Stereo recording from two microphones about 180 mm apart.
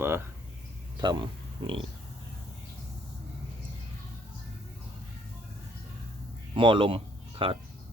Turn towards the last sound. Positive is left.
turn(degrees=-30)  # may be behind; listen again after turning